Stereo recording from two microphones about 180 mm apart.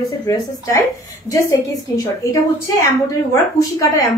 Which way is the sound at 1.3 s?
20° left (ahead or behind).